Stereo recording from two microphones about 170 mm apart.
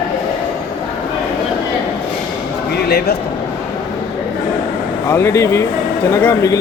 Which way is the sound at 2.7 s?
65° left (ahead or behind).